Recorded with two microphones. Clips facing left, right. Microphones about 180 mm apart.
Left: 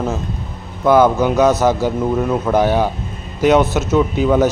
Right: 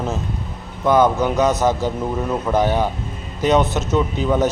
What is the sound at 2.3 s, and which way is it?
Speech, 5° left (ahead or behind).